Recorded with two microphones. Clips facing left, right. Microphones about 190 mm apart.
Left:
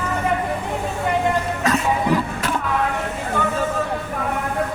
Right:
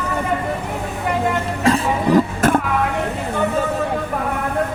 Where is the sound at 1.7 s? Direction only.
30° right (ahead or behind).